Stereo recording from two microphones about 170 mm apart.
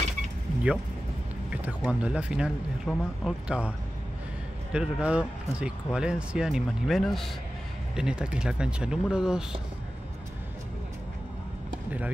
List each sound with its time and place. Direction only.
1.5 s speech: 10° right (ahead or behind)
4.7 s speech: 5° right (ahead or behind)